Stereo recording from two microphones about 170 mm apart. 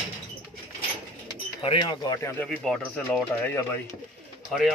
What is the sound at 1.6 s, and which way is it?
Speech, 30° left (ahead or behind).